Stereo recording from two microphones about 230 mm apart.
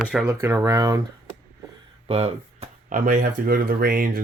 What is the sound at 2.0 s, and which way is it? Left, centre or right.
Speech, right.